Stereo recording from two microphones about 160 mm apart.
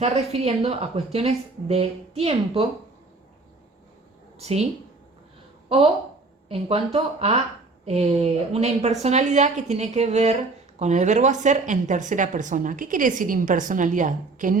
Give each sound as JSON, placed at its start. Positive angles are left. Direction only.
{"t": 0.0, "sound": "a woman's voice", "side_deg": -40}
{"t": 4.4, "sound": "a woman's voice", "side_deg": -40}